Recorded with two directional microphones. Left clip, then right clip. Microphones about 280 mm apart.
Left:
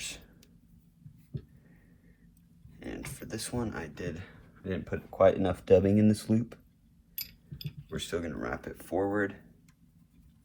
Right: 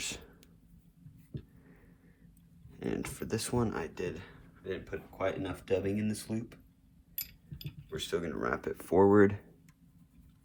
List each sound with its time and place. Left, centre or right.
2.8 s speech: right; by 4.9 s centre
5.1 s speech: centre
7.3 s speech: centre; by 9.0 s right